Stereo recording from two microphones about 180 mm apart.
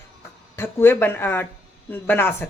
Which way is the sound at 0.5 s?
15° left (ahead or behind).